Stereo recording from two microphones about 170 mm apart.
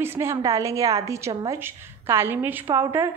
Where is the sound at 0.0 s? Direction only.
15° right (ahead or behind).